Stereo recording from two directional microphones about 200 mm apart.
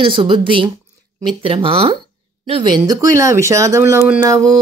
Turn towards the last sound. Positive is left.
turn(degrees=-15)  # may be behind; listen again after turning